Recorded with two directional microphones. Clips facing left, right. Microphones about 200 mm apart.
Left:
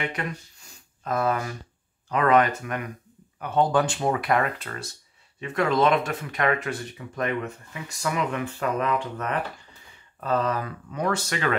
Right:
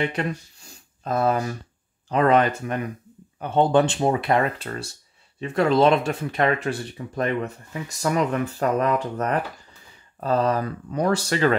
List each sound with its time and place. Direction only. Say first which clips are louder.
0.0 s speech: right 5 dB; 30° right (ahead or behind)